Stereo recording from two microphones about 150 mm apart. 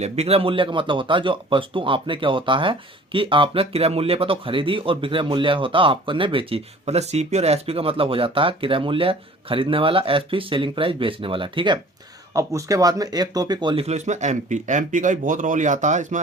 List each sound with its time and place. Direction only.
0.0 s speech: 45° right (ahead or behind)
12.3 s speech: 20° right (ahead or behind)
13.8 s speech: 50° right (ahead or behind)